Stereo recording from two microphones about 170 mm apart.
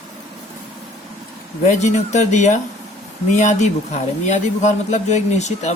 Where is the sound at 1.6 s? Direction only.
45° left (ahead or behind).